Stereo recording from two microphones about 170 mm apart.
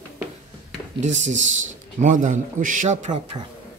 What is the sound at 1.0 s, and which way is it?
A man's voice, 45° right (ahead or behind).